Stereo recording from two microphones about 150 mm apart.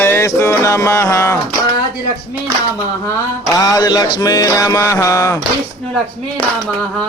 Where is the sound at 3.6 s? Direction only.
25° left (ahead or behind).